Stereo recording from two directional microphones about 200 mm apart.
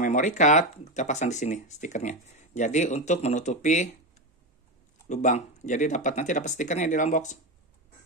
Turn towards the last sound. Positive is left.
turn(degrees=35)  # may be behind; listen again after turning